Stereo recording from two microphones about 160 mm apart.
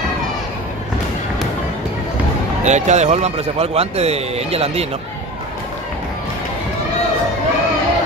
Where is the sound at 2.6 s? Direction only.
45° right (ahead or behind).